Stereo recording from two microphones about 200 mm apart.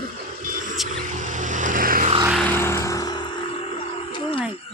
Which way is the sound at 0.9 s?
40° right (ahead or behind).